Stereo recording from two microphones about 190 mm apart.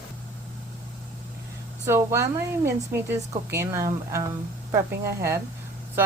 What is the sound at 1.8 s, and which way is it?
A woman's voice, 15° right (ahead or behind).